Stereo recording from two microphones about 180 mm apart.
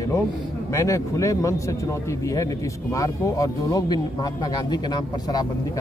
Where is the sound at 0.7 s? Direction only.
15° left (ahead or behind).